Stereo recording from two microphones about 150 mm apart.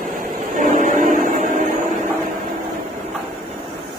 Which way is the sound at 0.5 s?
60° right (ahead or behind).